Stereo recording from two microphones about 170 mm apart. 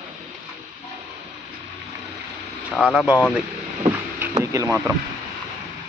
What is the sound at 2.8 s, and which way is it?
Speech, 5° right (ahead or behind).